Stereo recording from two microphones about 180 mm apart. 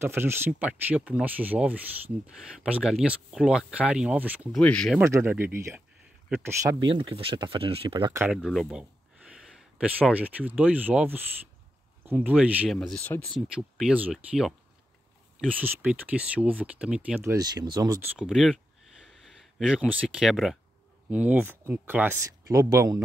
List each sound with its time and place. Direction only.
0.0 s speech: 10° right (ahead or behind)
4.6 s speech: 5° left (ahead or behind)
4.9 s speech: 15° right (ahead or behind); by 8.1 s 30° right (ahead or behind)
8.5 s speech: 5° right (ahead or behind)
12.3 s speech: 5° right (ahead or behind)
12.7 s speech: 5° left (ahead or behind)
15.5 s speech: 10° right (ahead or behind)
18.0 s speech: centre (ahead or behind)
19.6 s speech: 5° right (ahead or behind)